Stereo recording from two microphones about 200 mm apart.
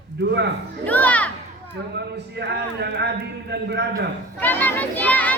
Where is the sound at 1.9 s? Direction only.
55° right (ahead or behind).